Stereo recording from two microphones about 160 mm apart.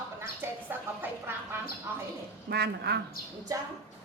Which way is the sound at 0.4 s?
15° right (ahead or behind).